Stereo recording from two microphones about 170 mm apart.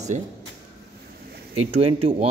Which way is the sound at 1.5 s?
35° right (ahead or behind).